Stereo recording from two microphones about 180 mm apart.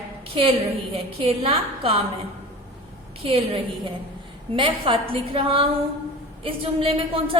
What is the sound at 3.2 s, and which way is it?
A woman's voice, 30° right (ahead or behind).